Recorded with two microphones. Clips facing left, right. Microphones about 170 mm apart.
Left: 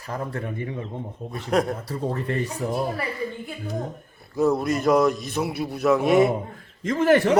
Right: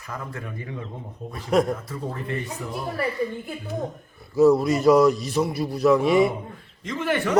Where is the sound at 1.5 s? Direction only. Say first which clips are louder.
Right 2 dB; centre (ahead or behind).